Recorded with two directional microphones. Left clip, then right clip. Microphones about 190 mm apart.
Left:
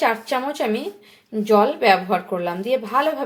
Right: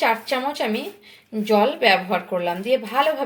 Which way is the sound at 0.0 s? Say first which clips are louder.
Even; 10° left (ahead or behind).